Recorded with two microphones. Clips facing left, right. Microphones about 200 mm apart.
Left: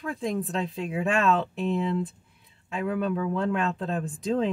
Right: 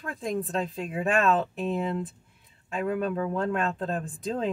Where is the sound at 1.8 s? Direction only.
45° right (ahead or behind).